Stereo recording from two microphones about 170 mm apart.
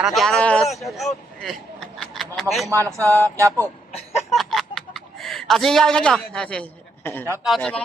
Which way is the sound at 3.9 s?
40° left (ahead or behind).